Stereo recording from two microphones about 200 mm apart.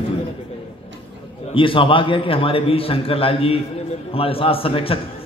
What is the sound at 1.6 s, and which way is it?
A man's voice, 25° left (ahead or behind).